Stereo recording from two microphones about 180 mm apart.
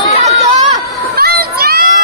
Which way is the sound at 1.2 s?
60° right (ahead or behind).